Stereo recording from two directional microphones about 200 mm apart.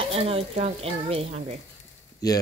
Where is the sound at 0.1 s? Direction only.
30° right (ahead or behind).